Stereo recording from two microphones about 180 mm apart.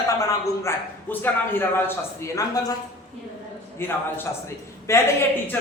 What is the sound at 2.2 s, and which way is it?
Speech, 20° left (ahead or behind).